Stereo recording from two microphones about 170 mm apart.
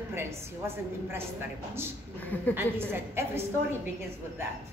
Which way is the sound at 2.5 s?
15° right (ahead or behind).